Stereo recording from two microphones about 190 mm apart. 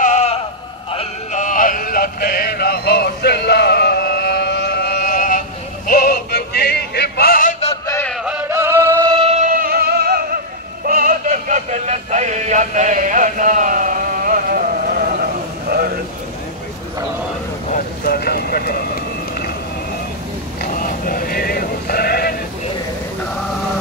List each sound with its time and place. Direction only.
0.0 s sheep: 35° left (ahead or behind)
0.9 s male singing: 40° left (ahead or behind)
5.9 s music: 50° left (ahead or behind)
7.8 s music: 15° left (ahead or behind)
8.1 s music: 5° right (ahead or behind)
9.1 s music: 30° right (ahead or behind)
18.0 s vehicle: 55° left (ahead or behind)
20.8 s sheep: 50° left (ahead or behind)